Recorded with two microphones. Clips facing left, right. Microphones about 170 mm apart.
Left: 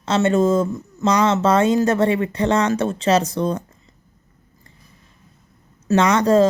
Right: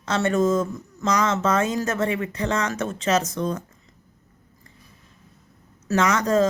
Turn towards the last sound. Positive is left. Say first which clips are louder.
# left 5 dB
turn(degrees=30)  # may be behind; listen again after turning